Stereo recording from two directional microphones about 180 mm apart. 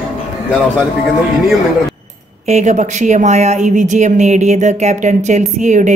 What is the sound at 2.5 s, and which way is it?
Speech, 40° right (ahead or behind).